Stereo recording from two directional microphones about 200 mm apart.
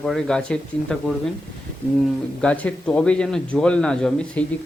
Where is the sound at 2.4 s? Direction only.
5° left (ahead or behind).